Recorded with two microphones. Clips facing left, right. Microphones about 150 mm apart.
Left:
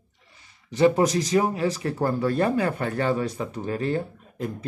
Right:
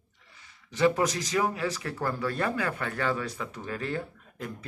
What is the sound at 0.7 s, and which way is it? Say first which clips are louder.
Speech: left 5 dB; 25° left (ahead or behind).